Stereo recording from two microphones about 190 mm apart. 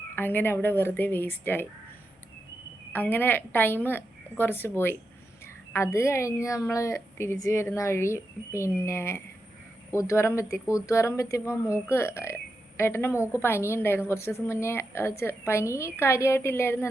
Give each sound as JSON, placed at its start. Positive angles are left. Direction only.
{"t": 0.2, "sound": "a woman's voice", "side_deg": 10}
{"t": 2.9, "sound": "a woman's voice", "side_deg": 10}